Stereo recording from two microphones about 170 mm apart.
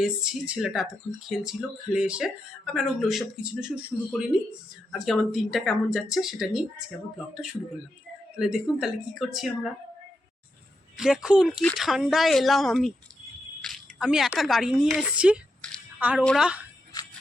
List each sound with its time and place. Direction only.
0.0 s speech: 5° right (ahead or behind)
8.4 s speech: 5° right (ahead or behind)
10.9 s a woman's voice: centre (ahead or behind)
16.9 s a sound: 20° left (ahead or behind)